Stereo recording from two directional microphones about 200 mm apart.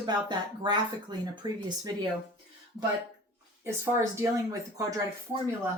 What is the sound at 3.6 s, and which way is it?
Speech, 10° right (ahead or behind).